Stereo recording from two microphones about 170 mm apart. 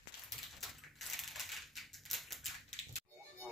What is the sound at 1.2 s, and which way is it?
Typewriter, centre (ahead or behind).